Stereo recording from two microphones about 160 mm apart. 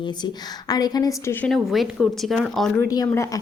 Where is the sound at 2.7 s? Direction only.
20° left (ahead or behind).